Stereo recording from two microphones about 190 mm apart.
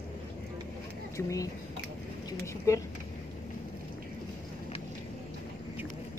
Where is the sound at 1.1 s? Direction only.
15° left (ahead or behind).